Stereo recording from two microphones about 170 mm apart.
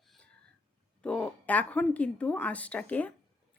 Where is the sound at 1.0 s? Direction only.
5° left (ahead or behind).